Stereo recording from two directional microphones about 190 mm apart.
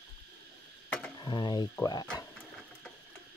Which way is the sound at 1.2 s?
25° left (ahead or behind).